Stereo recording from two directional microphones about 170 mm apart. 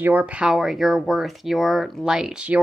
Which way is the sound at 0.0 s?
10° right (ahead or behind).